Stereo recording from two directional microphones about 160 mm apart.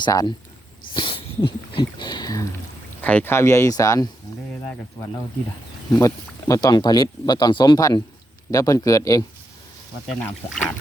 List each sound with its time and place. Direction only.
0.0 s speech: 25° left (ahead or behind)
0.9 s dog: 30° left (ahead or behind)
1.5 s speech: 30° left (ahead or behind)
3.0 s speech: 10° left (ahead or behind)
6.0 s speech: 20° left (ahead or behind)
10.1 s speech: 5° left (ahead or behind)